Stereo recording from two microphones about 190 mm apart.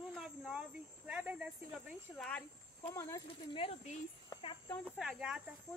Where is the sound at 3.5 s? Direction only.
30° left (ahead or behind).